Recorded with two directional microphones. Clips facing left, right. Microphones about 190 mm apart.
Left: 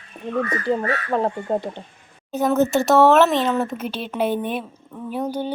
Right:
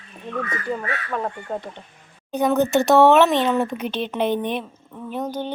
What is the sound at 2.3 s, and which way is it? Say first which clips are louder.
Speech: left 1 dB; centre (ahead or behind).